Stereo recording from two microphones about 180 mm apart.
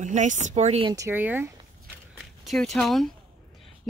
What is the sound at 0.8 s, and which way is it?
Speech, 15° right (ahead or behind).